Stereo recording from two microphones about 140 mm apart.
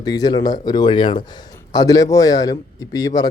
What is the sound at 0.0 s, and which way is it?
A man's voice, 30° left (ahead or behind).